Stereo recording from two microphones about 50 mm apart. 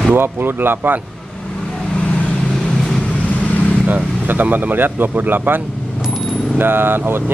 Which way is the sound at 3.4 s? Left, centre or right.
Left.